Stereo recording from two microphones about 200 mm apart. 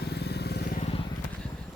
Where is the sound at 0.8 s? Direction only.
30° left (ahead or behind).